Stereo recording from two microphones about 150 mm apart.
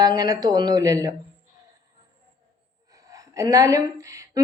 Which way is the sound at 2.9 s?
20° right (ahead or behind).